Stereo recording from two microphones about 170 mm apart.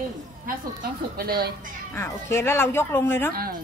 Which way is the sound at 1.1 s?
65° right (ahead or behind).